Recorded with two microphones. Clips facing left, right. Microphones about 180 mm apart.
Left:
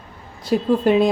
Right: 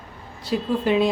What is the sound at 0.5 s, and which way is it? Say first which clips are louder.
Speech: left 5 dB; 50° left (ahead or behind).